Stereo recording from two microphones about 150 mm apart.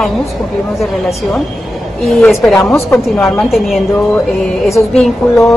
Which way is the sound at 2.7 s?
15° left (ahead or behind).